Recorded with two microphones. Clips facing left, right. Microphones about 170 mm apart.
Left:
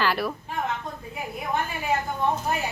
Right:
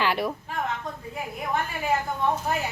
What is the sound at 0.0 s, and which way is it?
Speech, 20° right (ahead or behind).